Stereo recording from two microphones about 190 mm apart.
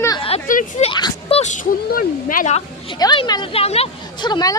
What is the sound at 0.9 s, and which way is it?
Speech, 25° left (ahead or behind).